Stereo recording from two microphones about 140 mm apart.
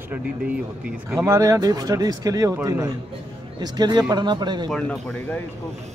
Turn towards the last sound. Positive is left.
turn(degrees=5)  # may be behind; listen again after turning